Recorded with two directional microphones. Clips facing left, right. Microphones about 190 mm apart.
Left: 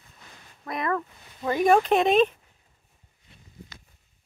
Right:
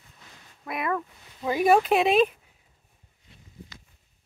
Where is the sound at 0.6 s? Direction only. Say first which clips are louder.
Left 1 dB; 5° right (ahead or behind).